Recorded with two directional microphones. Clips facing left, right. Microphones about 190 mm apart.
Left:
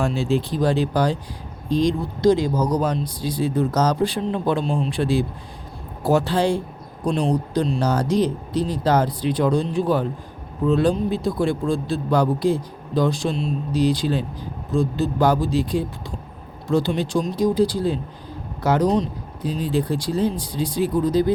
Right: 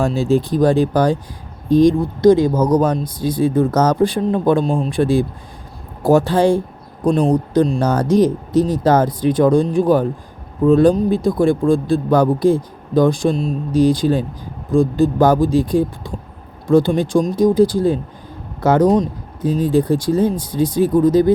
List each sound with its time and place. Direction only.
0.0 s speech: 40° right (ahead or behind)